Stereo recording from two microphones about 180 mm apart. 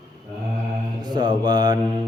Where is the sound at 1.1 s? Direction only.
25° right (ahead or behind).